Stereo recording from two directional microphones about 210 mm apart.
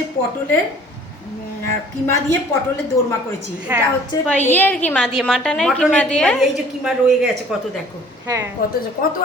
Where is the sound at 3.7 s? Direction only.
10° right (ahead or behind).